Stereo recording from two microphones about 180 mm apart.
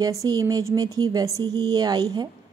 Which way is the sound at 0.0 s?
20° right (ahead or behind).